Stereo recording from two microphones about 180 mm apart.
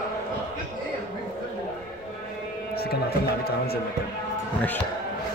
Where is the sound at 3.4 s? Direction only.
60° left (ahead or behind).